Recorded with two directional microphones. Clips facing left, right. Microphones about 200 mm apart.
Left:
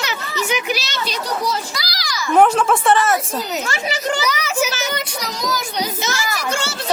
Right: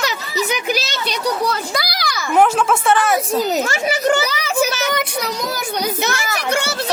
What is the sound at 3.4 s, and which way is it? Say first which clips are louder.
Speech: right 5 dB; 40° right (ahead or behind).